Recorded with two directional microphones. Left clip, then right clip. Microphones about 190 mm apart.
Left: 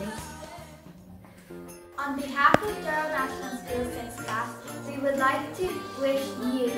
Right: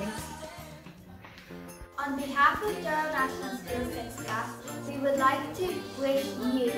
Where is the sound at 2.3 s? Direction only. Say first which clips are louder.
Left 3 dB; centre (ahead or behind).